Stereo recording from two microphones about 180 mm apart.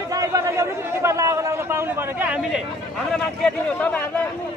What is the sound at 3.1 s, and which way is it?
Speech, 5° left (ahead or behind).